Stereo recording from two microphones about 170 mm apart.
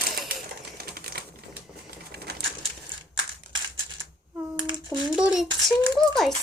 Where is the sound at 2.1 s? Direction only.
70° right (ahead or behind).